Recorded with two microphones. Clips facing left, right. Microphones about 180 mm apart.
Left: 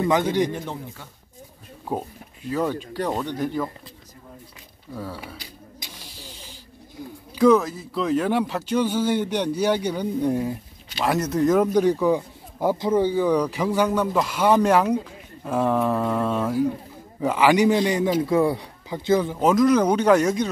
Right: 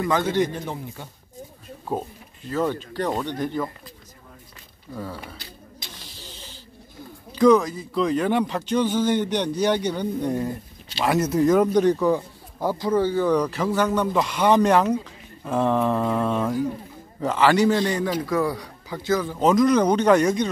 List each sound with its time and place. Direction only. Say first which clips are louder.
0.0 s speech: left 1 dB; 15° left (ahead or behind)
1.9 s speech: even; 15° left (ahead or behind)
4.9 s snake: even; 5° left (ahead or behind)
7.3 s a man's voice: even; 5° left (ahead or behind); by 19.3 s 20° left (ahead or behind)
19.4 s speech: right 1 dB; 5° left (ahead or behind)